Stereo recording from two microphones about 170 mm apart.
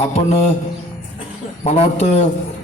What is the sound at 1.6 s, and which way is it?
Speech, 40° left (ahead or behind).